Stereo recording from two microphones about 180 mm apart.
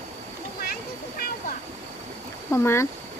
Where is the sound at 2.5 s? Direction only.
15° left (ahead or behind).